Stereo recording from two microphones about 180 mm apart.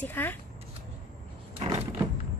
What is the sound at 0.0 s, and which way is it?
Speech, 10° left (ahead or behind).